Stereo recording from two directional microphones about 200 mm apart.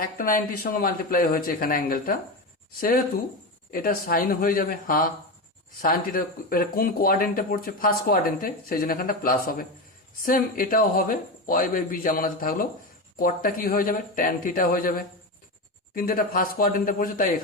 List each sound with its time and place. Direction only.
0.0 s speech: 45° left (ahead or behind)
3.7 s speech: 45° left (ahead or behind)